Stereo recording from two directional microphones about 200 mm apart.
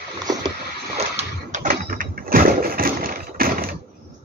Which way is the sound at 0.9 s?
35° right (ahead or behind).